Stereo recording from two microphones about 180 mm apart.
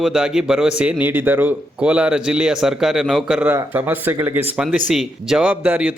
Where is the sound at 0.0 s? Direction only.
5° right (ahead or behind).